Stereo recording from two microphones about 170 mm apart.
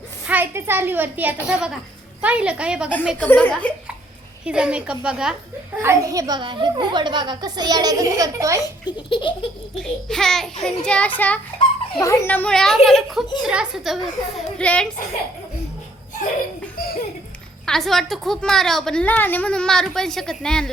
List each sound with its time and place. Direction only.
0.3 s a woman's voice: 10° right (ahead or behind)
3.2 s speech: 10° left (ahead or behind)
4.4 s a woman's voice: 5° right (ahead or behind)
5.8 s a woman's voice: 15° right (ahead or behind)
8.8 s speech: 30° left (ahead or behind)
9.8 s a woman's voice: 5° left (ahead or behind)
16.8 s laughter: 65° left (ahead or behind)
17.7 s a woman's voice: centre (ahead or behind)